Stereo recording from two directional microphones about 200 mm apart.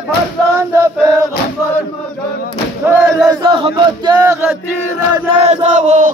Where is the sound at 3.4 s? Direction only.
25° right (ahead or behind).